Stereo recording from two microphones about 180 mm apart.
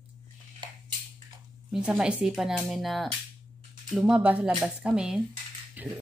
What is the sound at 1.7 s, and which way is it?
Speech, 5° right (ahead or behind).